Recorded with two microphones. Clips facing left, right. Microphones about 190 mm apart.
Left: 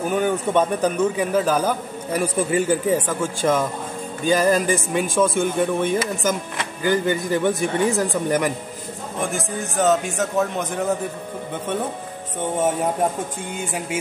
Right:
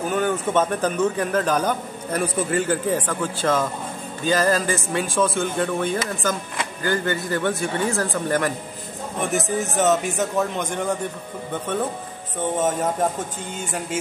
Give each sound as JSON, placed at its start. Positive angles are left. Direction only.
{"t": 0.1, "sound": "a man's voice", "side_deg": 15}
{"t": 9.2, "sound": "a man's voice", "side_deg": 0}